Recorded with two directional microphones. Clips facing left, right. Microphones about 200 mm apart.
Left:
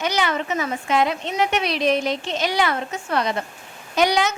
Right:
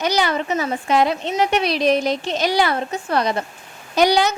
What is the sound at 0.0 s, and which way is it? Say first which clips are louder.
A woman's voice: right 3 dB; 35° right (ahead or behind).